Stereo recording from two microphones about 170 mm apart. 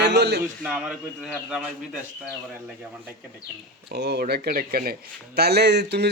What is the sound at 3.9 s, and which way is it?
Speech, 75° right (ahead or behind).